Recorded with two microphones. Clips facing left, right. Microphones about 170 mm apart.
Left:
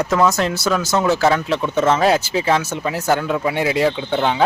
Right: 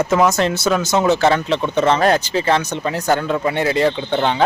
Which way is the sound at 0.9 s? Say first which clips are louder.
Right 2 dB; 20° right (ahead or behind).